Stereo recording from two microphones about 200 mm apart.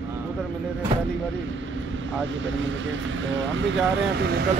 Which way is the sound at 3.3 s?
70° right (ahead or behind).